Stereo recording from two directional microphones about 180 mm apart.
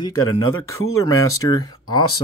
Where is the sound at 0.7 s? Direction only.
15° left (ahead or behind).